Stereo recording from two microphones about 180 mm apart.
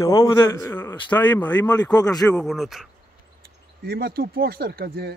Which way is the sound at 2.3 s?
Centre (ahead or behind).